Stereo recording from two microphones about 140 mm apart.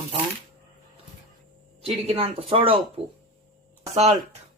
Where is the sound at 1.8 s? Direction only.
45° right (ahead or behind).